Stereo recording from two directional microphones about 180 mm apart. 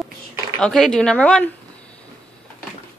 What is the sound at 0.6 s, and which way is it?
Speech, centre (ahead or behind).